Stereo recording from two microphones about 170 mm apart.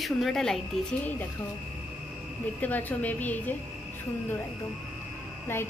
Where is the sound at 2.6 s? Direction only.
10° left (ahead or behind).